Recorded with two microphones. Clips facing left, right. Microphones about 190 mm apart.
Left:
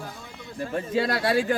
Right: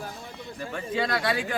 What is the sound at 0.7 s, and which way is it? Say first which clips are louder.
Speech: left 3 dB; 40° left (ahead or behind).